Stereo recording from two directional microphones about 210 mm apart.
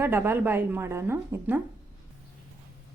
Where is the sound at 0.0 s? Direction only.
10° right (ahead or behind).